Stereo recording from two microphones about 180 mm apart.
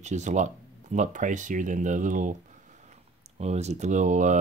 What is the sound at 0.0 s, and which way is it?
Speech, 40° right (ahead or behind).